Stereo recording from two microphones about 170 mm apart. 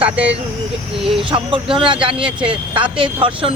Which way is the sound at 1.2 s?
30° right (ahead or behind).